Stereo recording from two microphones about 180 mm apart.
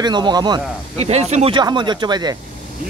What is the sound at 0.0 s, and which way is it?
Speech, 25° right (ahead or behind).